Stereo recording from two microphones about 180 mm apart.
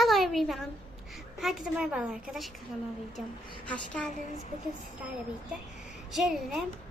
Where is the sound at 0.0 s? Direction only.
Centre (ahead or behind).